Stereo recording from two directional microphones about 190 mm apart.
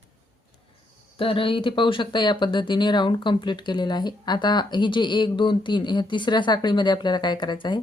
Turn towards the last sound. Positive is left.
turn(degrees=25)  # may be behind; listen again after turning